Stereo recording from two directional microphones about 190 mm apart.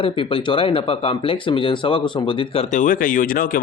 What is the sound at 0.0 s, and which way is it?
Speech, 30° left (ahead or behind).